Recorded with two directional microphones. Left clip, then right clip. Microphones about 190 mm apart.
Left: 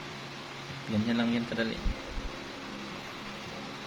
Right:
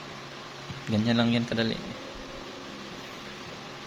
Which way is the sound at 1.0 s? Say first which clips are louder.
Right 5 dB; 55° right (ahead or behind).